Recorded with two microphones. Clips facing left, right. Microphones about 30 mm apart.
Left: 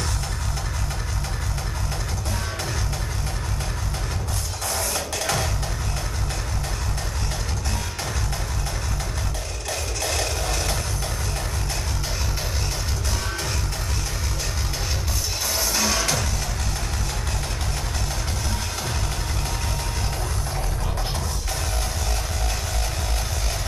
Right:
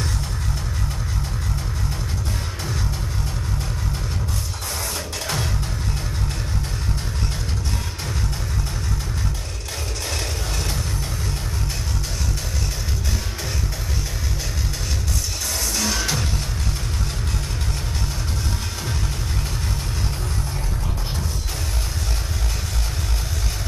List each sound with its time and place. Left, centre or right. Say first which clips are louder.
4.9 s music: left 2 dB; left
15.6 s music: left 1 dB; centre